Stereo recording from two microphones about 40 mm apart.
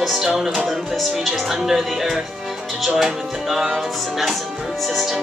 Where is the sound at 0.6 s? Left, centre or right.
Centre.